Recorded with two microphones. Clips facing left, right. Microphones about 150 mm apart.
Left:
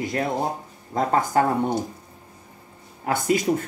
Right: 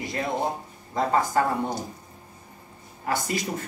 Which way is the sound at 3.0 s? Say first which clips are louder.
Left 5 dB; 55° left (ahead or behind).